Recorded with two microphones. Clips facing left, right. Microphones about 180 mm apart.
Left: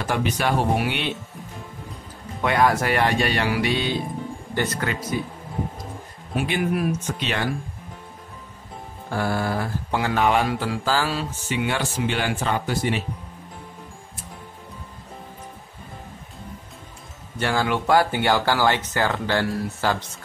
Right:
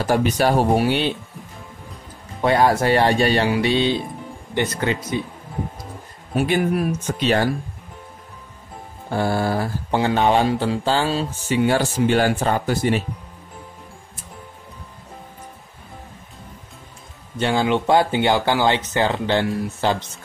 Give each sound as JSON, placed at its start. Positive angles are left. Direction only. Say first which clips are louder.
{"t": 0.0, "sound": "speech", "louder": "right 5 dB", "side_deg": -40}
{"t": 2.4, "sound": "speech", "louder": "right 3 dB", "side_deg": -30}
{"t": 6.3, "sound": "speech", "louder": "right 4 dB", "side_deg": -45}
{"t": 9.1, "sound": "speech", "louder": "right 4 dB", "side_deg": -25}
{"t": 17.4, "sound": "speech", "louder": "right 4 dB", "side_deg": -20}